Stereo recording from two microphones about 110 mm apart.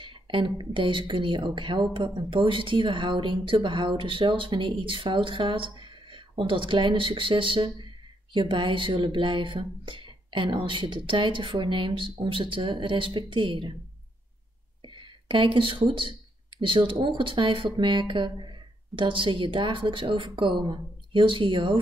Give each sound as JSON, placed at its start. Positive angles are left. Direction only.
{"t": 0.0, "sound": "speech", "side_deg": -50}
{"t": 15.0, "sound": "speech", "side_deg": -50}